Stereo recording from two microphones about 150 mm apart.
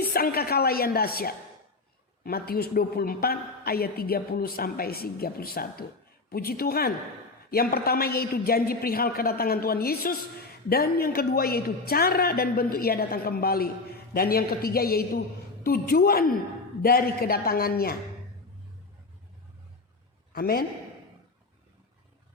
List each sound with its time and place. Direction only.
0.0 s a woman's voice: 90° left
20.3 s a man's voice: 80° left